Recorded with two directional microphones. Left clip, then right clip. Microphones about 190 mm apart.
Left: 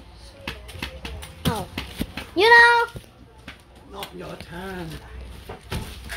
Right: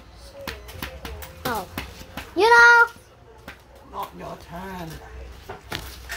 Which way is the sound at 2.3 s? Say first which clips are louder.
Right 1 dB; 10° left (ahead or behind).